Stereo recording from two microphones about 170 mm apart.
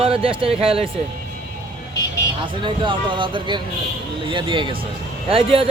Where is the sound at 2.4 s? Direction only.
30° right (ahead or behind).